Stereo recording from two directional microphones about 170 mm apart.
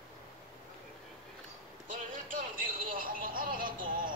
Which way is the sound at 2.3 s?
55° right (ahead or behind).